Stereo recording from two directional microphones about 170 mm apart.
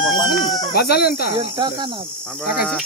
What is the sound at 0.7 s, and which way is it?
Speech, 70° left (ahead or behind).